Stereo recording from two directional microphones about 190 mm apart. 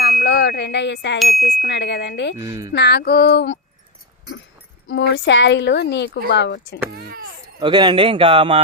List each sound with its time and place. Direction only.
0.2 s a sound: 60° left (ahead or behind)
1.2 s chime: centre (ahead or behind)
1.6 s a woman's voice: 65° left (ahead or behind)
2.4 s speech: 15° right (ahead or behind)
2.7 s a woman's voice: 60° left (ahead or behind)
4.9 s a woman's voice: 70° left (ahead or behind)
6.9 s a child's voice: 50° right (ahead or behind)
7.6 s speech: 25° right (ahead or behind)